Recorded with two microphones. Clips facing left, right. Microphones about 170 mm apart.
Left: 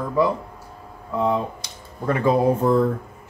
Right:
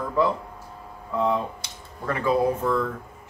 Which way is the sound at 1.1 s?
15° left (ahead or behind).